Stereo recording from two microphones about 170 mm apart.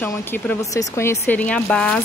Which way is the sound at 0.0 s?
10° left (ahead or behind).